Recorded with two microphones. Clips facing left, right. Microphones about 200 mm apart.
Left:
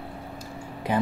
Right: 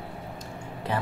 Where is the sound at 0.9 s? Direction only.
15° left (ahead or behind).